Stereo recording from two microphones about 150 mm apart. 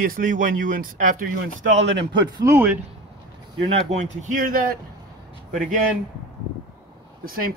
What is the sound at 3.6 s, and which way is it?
A man's voice, 40° right (ahead or behind).